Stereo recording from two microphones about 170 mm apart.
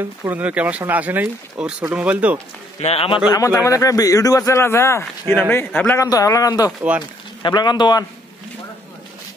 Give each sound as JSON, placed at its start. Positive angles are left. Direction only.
{"t": 0.0, "sound": "speech", "side_deg": -10}
{"t": 2.8, "sound": "a man's voice", "side_deg": 35}
{"t": 3.3, "sound": "a man's voice", "side_deg": 20}